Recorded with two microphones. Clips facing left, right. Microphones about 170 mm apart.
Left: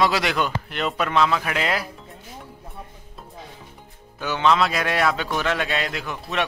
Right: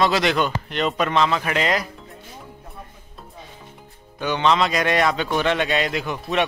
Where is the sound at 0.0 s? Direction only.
10° left (ahead or behind).